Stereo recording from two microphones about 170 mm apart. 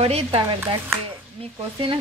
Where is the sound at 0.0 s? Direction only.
35° right (ahead or behind).